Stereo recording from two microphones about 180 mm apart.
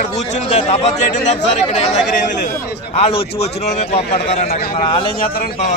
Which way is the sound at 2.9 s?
35° left (ahead or behind).